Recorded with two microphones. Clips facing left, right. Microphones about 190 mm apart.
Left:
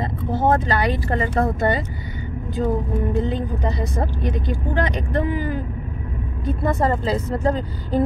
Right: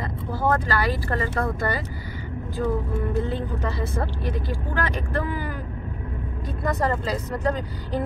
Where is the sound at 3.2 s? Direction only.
20° left (ahead or behind).